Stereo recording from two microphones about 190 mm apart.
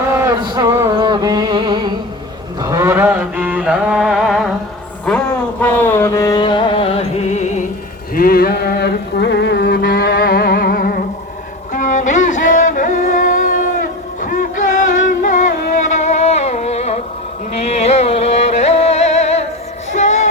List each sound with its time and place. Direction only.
0.3 s music: 20° right (ahead or behind)
2.6 s mantra: 20° right (ahead or behind); by 4.5 s centre (ahead or behind)
5.0 s music: 5° left (ahead or behind); by 7.6 s 35° left (ahead or behind)
8.1 s music: 50° left (ahead or behind); by 19.5 s 35° left (ahead or behind)
19.9 s child singing: 40° left (ahead or behind)